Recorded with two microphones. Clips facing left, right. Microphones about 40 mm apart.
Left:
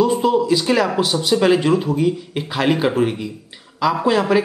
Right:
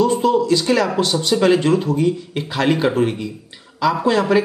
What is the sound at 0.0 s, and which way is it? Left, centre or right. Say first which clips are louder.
A man's voice: even; centre.